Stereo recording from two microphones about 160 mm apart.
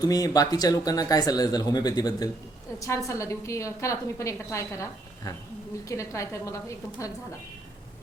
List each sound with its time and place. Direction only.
0.0 s speech: 25° left (ahead or behind)